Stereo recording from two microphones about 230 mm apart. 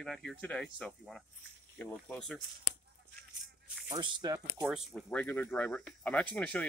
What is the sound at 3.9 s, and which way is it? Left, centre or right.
Speech, centre.